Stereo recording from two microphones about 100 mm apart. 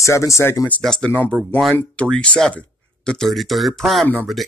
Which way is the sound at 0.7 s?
10° left (ahead or behind).